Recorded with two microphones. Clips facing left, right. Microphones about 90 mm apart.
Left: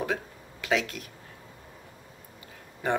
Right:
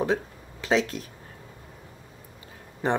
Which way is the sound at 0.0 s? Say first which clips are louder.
Right 5 dB; 30° right (ahead or behind).